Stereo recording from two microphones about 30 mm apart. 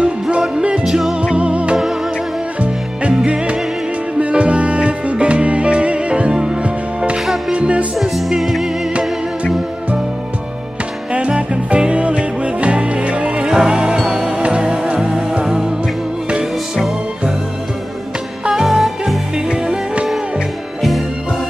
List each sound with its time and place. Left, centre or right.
0.8 s music: centre
1.3 s music: right
6.3 s music: right
7.5 s music: right
8.0 s music: centre
11.1 s music: right
13.5 s music: right
13.9 s music: centre
18.5 s music: centre
19.3 s music: right